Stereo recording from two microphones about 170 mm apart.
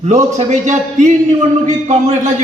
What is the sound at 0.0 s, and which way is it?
A man's voice, 40° right (ahead or behind).